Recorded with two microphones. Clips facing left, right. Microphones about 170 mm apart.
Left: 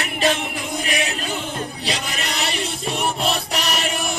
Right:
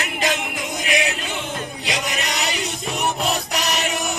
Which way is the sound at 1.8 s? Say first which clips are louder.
Right 3 dB; 30° left (ahead or behind).